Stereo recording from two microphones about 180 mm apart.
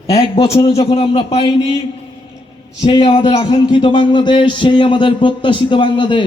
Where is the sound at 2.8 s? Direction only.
30° left (ahead or behind).